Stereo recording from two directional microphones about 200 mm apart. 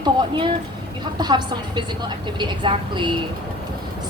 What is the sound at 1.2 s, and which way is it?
A woman's voice, 20° right (ahead or behind).